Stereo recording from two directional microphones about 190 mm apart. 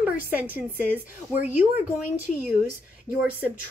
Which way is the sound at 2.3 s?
40° left (ahead or behind).